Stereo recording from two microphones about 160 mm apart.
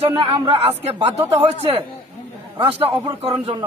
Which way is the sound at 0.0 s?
35° right (ahead or behind).